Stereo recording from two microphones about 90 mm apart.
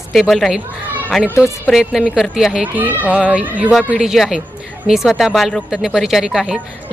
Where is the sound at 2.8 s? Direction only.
20° right (ahead or behind).